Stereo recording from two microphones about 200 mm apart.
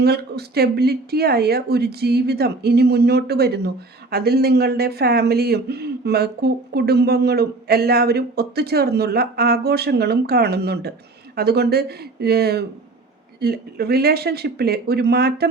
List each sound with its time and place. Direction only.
0.0 s speech: 55° right (ahead or behind)